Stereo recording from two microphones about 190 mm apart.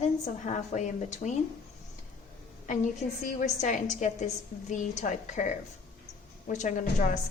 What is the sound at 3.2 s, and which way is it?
A woman's voice, 40° left (ahead or behind).